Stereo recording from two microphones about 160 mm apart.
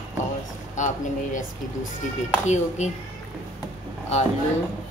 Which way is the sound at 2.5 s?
45° left (ahead or behind).